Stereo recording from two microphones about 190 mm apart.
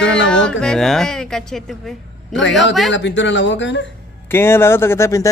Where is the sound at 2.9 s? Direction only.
70° left (ahead or behind).